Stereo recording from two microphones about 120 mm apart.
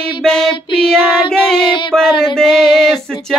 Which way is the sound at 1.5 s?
40° left (ahead or behind).